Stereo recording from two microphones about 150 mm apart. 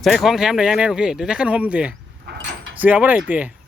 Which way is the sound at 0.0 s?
Centre (ahead or behind).